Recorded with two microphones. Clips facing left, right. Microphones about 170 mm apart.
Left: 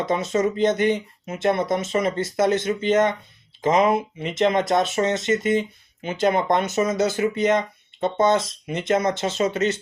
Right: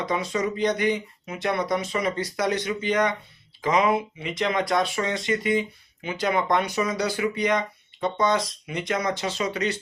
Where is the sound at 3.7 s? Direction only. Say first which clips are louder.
Left 2 dB; 45° left (ahead or behind).